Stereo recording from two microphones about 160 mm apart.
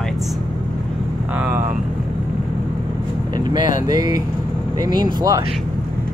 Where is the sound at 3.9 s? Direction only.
25° right (ahead or behind).